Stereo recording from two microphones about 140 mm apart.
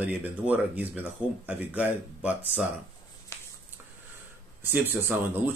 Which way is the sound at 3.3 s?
20° left (ahead or behind).